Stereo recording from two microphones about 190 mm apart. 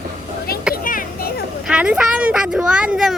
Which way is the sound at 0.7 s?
45° left (ahead or behind).